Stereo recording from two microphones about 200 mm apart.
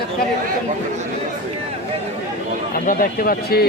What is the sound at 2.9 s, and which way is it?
Speech, 45° left (ahead or behind).